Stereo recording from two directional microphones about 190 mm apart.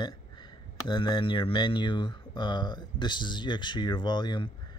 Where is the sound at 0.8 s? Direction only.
25° left (ahead or behind).